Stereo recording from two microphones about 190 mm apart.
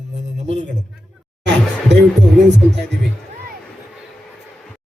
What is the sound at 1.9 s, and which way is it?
Speech, 65° right (ahead or behind).